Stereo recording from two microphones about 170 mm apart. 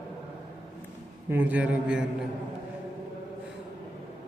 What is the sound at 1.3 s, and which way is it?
Speech, 10° right (ahead or behind).